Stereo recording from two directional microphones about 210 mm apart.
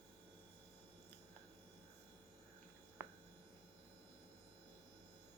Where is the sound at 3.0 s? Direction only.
10° right (ahead or behind).